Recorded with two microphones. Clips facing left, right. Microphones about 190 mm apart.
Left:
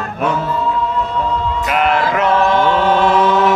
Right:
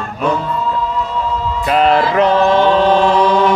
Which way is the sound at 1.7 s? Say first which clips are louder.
Right 4 dB; 30° right (ahead or behind).